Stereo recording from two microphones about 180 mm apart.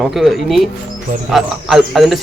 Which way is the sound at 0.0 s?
Centre (ahead or behind).